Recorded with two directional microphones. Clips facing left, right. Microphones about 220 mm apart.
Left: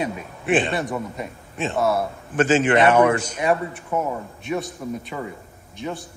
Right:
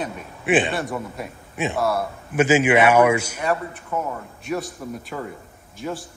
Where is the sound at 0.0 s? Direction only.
Centre (ahead or behind).